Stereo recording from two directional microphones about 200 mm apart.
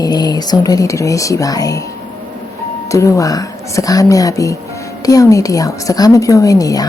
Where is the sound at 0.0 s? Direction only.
20° left (ahead or behind).